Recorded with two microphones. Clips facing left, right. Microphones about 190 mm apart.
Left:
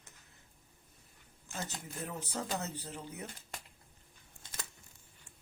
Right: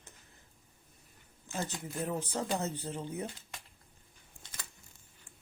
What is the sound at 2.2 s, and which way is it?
Speech, 30° right (ahead or behind).